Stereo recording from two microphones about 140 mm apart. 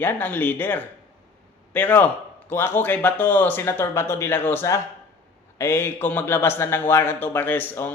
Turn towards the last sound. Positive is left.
turn(degrees=15)  # may be behind; listen again after turning